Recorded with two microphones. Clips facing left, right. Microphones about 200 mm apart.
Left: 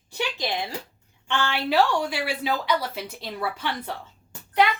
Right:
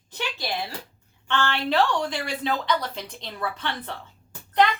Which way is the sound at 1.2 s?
10° left (ahead or behind).